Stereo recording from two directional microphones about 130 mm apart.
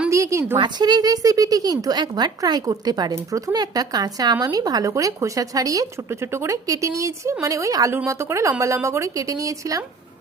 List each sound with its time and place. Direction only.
0.1 s a woman's voice: 25° right (ahead or behind)
0.5 s speech: 35° right (ahead or behind)